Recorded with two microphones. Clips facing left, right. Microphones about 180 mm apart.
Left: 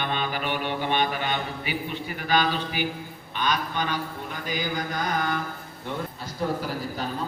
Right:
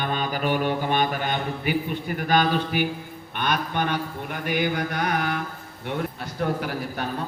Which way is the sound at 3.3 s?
55° right (ahead or behind).